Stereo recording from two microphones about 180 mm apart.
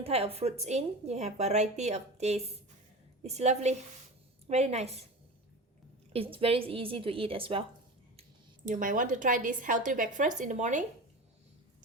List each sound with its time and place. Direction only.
0.0 s a woman's voice: 35° right (ahead or behind)
6.1 s a woman's voice: 30° right (ahead or behind)
8.6 s a woman's voice: 45° right (ahead or behind)